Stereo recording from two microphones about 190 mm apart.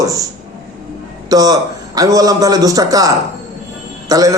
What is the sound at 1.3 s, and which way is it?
A man's voice, 20° right (ahead or behind).